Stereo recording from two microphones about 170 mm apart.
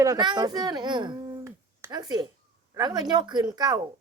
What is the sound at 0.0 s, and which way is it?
Speech, 25° right (ahead or behind).